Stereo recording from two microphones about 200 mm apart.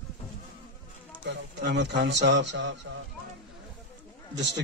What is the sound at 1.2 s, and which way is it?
Speech, 60° right (ahead or behind).